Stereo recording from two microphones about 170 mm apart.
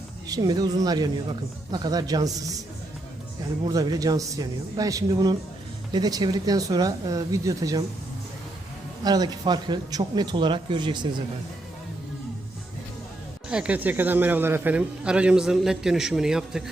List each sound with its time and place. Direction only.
0.3 s a man's voice: 20° right (ahead or behind)
3.7 s a man's voice: 20° right (ahead or behind)
9.0 s a man's voice: 25° right (ahead or behind)
13.5 s a man's voice: 5° right (ahead or behind)